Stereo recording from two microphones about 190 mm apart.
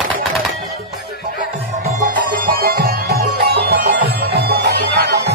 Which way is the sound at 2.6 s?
50° right (ahead or behind).